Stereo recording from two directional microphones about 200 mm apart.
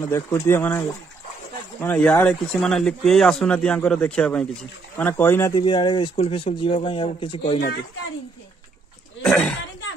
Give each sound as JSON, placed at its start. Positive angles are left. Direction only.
{"t": 0.1, "sound": "speech", "side_deg": 10}
{"t": 5.6, "sound": "speech", "side_deg": 25}
{"t": 9.2, "sound": "speech", "side_deg": 5}